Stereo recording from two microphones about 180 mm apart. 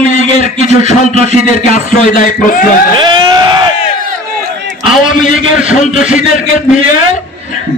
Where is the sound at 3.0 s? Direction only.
25° right (ahead or behind).